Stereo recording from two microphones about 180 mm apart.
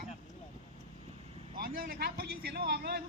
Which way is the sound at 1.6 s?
55° right (ahead or behind).